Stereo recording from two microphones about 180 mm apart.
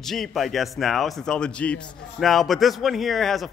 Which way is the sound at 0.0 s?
Centre (ahead or behind).